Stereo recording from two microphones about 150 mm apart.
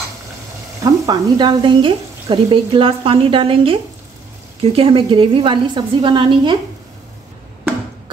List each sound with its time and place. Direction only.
0.8 s sizzle: 25° right (ahead or behind)